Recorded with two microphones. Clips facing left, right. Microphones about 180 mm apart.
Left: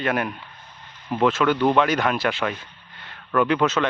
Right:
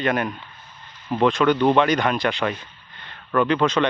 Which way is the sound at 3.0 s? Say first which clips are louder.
Even; 5° left (ahead or behind).